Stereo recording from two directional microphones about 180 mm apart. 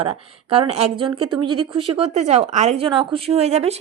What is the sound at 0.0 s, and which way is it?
Speech, 35° right (ahead or behind).